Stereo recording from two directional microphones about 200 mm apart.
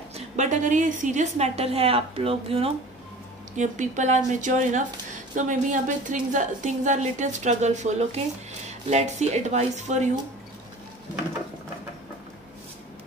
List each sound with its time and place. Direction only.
0.1 s a woman's voice: 40° right (ahead or behind)